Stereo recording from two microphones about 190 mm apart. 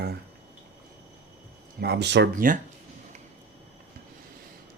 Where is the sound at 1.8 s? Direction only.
60° right (ahead or behind).